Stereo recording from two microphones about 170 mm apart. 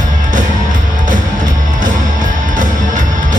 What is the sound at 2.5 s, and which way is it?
Music, 50° right (ahead or behind).